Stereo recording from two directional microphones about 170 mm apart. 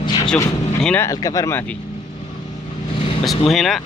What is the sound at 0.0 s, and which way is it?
Vehicle, 25° left (ahead or behind).